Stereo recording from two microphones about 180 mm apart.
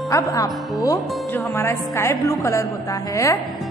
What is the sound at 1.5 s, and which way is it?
A woman's voice, 15° left (ahead or behind).